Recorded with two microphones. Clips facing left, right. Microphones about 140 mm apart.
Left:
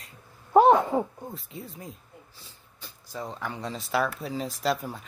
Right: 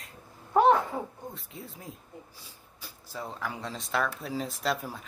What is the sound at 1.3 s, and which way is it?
Speech, centre (ahead or behind).